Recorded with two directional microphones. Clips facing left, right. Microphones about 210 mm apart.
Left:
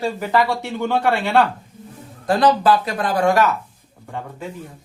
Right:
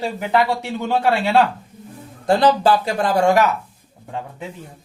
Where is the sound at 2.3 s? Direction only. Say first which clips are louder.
Right 1 dB; 30° right (ahead or behind).